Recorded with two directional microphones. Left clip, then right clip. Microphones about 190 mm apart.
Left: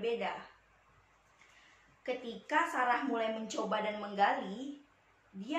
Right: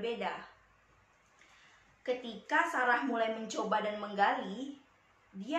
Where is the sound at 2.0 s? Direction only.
10° right (ahead or behind).